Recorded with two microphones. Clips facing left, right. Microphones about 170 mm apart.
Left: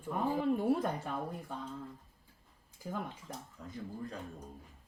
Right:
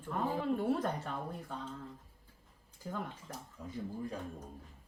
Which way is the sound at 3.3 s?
10° right (ahead or behind).